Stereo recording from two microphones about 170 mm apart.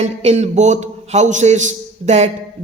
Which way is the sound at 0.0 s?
40° right (ahead or behind).